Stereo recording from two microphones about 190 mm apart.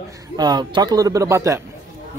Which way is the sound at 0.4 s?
20° right (ahead or behind).